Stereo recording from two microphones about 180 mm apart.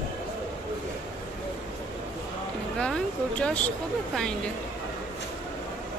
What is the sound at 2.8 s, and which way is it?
Speech, 5° left (ahead or behind).